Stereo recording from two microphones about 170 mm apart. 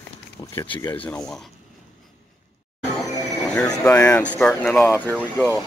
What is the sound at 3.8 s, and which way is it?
Speech, 15° left (ahead or behind).